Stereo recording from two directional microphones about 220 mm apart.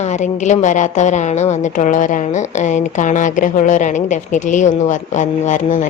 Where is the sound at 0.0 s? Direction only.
30° left (ahead or behind).